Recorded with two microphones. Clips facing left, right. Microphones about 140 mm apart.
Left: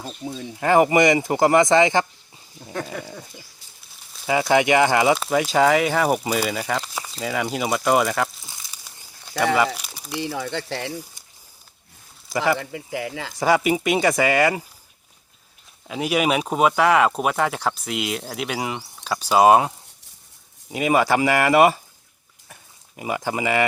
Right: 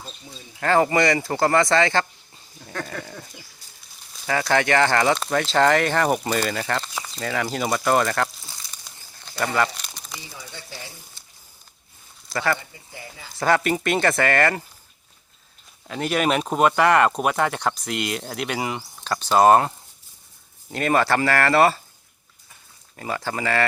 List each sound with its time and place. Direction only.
0.0 s speech: 60° left (ahead or behind)
0.6 s speech: 15° left (ahead or behind)
4.3 s speech: 10° left (ahead or behind)
9.7 s crumpling: 5° left (ahead or behind)
10.2 s speech: 75° left (ahead or behind)
11.2 s a sound: 15° left (ahead or behind)
12.5 s speech: 90° left
13.4 s speech: 10° left (ahead or behind)
15.9 s speech: 5° left (ahead or behind)
20.7 s speech: 10° left (ahead or behind)
23.0 s speech: 15° left (ahead or behind)